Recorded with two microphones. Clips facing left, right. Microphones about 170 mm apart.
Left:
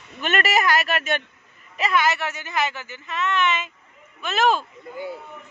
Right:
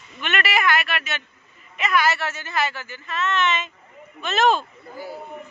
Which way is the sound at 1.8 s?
25° left (ahead or behind).